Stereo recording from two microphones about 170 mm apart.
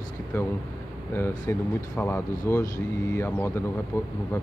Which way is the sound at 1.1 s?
15° left (ahead or behind).